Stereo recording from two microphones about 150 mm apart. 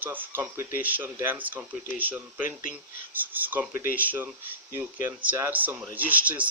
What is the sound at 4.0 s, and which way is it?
Speech, 15° right (ahead or behind).